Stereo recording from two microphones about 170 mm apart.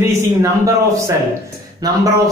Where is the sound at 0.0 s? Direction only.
15° right (ahead or behind).